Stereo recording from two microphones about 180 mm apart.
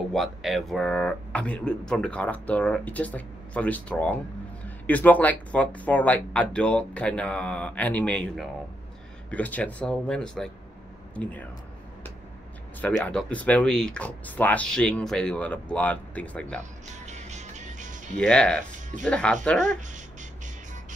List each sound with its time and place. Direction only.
0.1 s speech: centre (ahead or behind)
12.8 s speech: 5° left (ahead or behind)
16.8 s music: 40° right (ahead or behind)
18.2 s speech: 5° left (ahead or behind)